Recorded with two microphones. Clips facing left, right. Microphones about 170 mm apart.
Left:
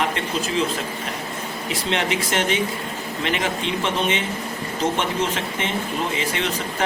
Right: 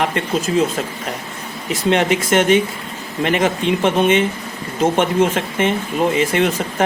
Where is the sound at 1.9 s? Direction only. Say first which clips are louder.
Right 8 dB; 50° right (ahead or behind).